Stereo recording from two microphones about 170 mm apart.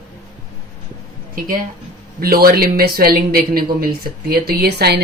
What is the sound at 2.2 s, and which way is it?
Speech, 60° right (ahead or behind).